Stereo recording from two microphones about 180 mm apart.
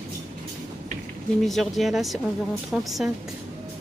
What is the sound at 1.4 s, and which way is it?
A woman's voice, centre (ahead or behind).